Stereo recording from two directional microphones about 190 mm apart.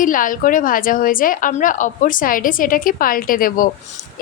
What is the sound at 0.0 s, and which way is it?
Speech, 45° left (ahead or behind).